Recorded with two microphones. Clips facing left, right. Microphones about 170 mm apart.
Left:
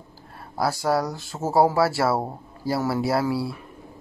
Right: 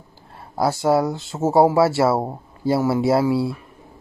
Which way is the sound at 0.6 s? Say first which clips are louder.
Right 5 dB; 25° right (ahead or behind).